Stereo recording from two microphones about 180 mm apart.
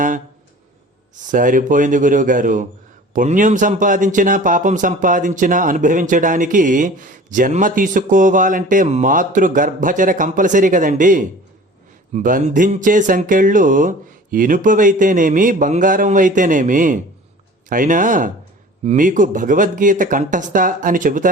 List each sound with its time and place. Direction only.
1.3 s a man's voice: 45° right (ahead or behind)